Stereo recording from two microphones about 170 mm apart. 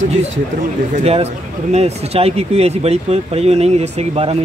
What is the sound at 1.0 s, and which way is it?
Speech, 35° right (ahead or behind).